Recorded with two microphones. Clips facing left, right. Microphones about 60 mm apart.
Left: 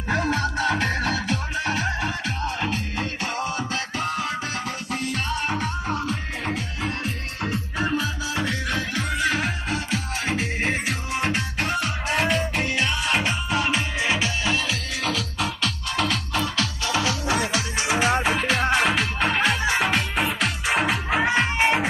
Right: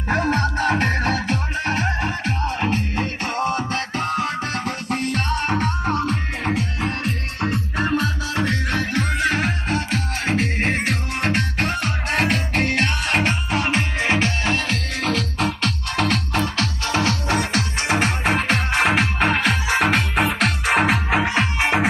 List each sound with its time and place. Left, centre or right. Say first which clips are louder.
0.1 s music: right 3 dB; right
21.4 s music: even; right